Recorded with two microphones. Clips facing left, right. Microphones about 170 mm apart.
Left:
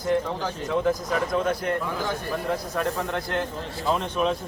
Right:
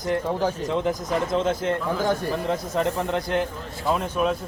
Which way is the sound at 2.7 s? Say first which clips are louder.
Right 3 dB; 20° right (ahead or behind).